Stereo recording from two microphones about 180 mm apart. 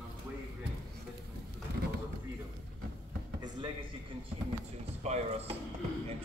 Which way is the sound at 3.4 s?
25° right (ahead or behind).